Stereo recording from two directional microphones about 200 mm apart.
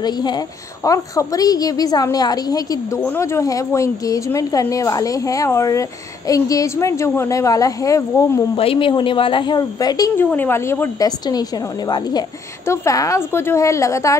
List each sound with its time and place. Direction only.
0.0 s a woman's voice: 20° left (ahead or behind)
8.5 s a woman's voice: 25° left (ahead or behind)